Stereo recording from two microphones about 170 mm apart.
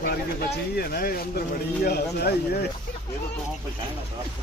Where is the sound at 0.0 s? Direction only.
65° left (ahead or behind).